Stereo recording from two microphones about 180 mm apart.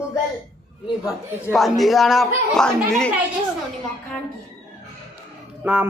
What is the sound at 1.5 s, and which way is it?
Speech, centre (ahead or behind).